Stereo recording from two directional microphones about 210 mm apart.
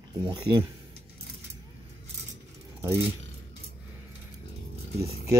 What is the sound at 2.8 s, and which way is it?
Speech, 15° right (ahead or behind).